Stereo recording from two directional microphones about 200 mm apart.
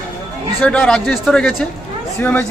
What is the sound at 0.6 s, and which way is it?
A man's voice, 5° left (ahead or behind).